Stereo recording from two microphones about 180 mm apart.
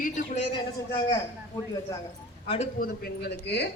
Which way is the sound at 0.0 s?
45° left (ahead or behind).